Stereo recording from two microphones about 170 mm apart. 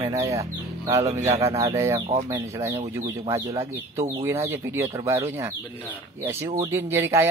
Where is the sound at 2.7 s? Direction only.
30° right (ahead or behind).